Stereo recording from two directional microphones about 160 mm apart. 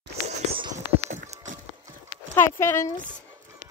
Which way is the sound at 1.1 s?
50° right (ahead or behind).